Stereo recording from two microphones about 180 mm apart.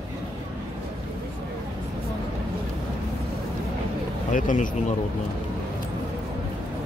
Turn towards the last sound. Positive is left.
turn(degrees=45)  # may be behind; listen again after turning